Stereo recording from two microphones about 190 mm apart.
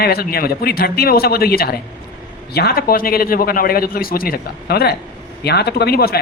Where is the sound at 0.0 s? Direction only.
55° left (ahead or behind).